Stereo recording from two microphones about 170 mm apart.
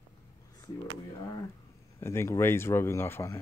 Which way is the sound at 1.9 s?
15° left (ahead or behind).